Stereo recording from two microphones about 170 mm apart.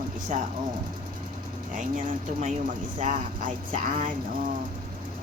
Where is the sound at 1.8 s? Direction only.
50° right (ahead or behind).